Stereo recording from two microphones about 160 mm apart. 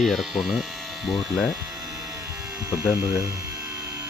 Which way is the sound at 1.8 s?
20° right (ahead or behind).